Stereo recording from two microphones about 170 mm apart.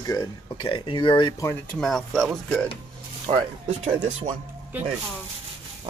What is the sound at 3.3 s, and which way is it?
Speech, 35° right (ahead or behind).